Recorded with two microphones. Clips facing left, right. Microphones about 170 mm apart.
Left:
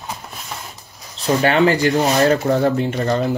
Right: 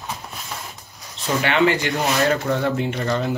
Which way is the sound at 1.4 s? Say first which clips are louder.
Left 4 dB; 40° left (ahead or behind).